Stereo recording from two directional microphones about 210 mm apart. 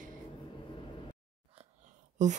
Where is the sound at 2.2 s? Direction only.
35° right (ahead or behind).